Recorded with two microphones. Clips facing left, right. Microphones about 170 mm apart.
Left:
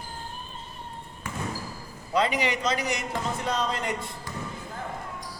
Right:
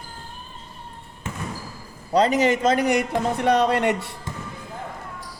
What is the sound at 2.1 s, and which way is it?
A man's voice, 40° right (ahead or behind).